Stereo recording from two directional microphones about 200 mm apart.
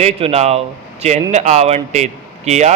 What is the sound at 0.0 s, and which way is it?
Speech, 30° right (ahead or behind).